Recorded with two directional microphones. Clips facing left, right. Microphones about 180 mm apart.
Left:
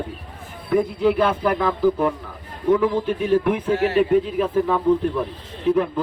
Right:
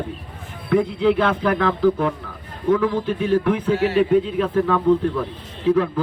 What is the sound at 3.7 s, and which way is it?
Speech, 45° left (ahead or behind).